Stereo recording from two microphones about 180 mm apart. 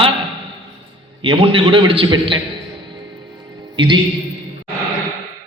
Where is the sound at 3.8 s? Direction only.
25° right (ahead or behind).